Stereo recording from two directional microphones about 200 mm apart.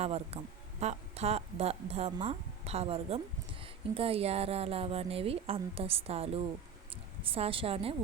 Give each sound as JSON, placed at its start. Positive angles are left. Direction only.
{"t": 0.0, "sound": "a woman's voice", "side_deg": -30}